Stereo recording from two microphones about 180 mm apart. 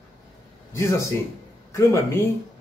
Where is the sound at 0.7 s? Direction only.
15° left (ahead or behind).